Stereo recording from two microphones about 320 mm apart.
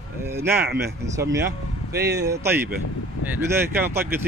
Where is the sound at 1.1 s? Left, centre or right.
Centre.